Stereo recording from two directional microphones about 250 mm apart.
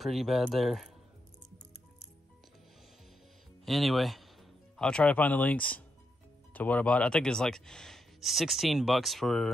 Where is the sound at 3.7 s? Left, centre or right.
Centre.